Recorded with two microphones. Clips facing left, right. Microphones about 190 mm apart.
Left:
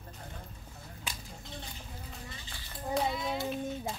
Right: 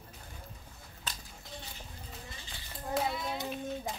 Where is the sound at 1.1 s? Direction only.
10° left (ahead or behind).